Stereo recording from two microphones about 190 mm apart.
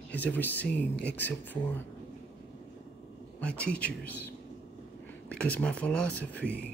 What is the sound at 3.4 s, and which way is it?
Speech, 5° left (ahead or behind).